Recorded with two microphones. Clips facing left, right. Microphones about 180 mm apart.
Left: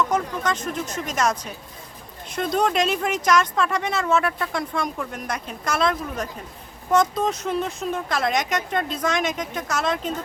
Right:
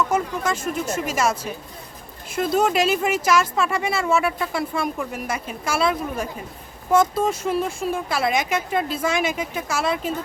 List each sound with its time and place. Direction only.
0.0 s speech: 10° right (ahead or behind)